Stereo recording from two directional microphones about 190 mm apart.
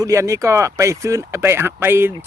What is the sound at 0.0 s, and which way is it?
Speech, 15° right (ahead or behind).